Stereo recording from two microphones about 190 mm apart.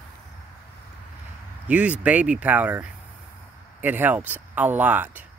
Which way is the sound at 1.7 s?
5° right (ahead or behind).